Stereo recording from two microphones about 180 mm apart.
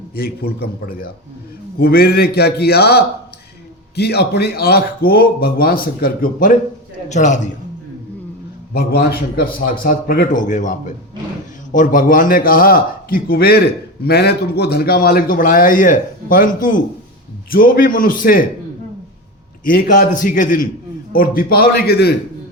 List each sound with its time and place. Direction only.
0.2 s a man's voice: 60° left (ahead or behind); by 7.5 s 40° left (ahead or behind)
8.7 s a man's voice: 60° left (ahead or behind)
19.6 s a man's voice: 50° left (ahead or behind)